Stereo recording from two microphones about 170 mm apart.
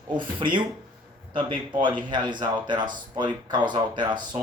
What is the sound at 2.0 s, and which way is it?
Speech, 25° right (ahead or behind).